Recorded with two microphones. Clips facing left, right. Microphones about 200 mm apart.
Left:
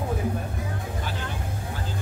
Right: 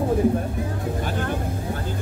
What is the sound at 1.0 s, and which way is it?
Vehicle, 50° right (ahead or behind).